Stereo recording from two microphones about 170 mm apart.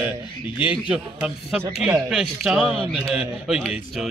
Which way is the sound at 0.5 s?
30° left (ahead or behind).